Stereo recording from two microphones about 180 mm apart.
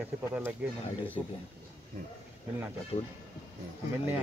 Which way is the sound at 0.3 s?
10° right (ahead or behind).